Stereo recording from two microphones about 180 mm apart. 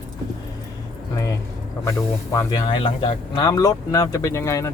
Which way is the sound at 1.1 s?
15° left (ahead or behind).